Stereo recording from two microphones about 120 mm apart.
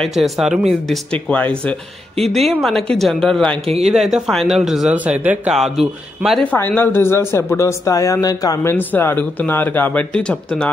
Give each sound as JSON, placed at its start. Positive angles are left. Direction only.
{"t": 0.0, "sound": "speech", "side_deg": 0}
{"t": 5.6, "sound": "speech", "side_deg": 0}
{"t": 6.4, "sound": "speech", "side_deg": 15}
{"t": 8.7, "sound": "speech", "side_deg": 15}